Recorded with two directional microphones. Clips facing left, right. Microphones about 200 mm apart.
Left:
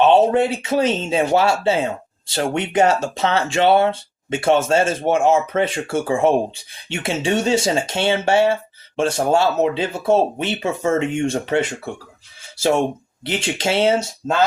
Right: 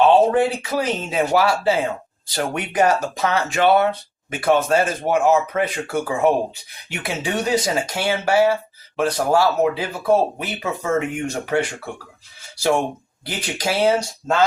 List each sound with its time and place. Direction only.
0.0 s speech: 25° left (ahead or behind)